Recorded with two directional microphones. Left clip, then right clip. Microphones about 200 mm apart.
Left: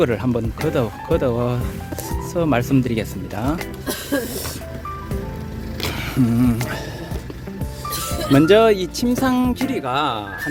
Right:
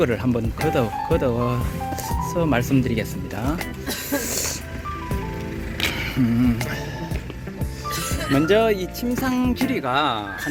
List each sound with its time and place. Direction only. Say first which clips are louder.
0.0 s speech: left 2 dB; 10° left (ahead or behind)
5.9 s a sound: left 2 dB; 15° left (ahead or behind)
8.3 s speech: left 5 dB; 20° left (ahead or behind)
9.6 s speech: even; centre (ahead or behind)